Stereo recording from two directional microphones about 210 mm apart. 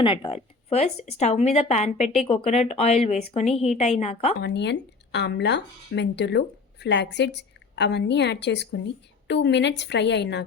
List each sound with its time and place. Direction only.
0.0 s speech: 25° left (ahead or behind)
4.4 s speech: 55° left (ahead or behind)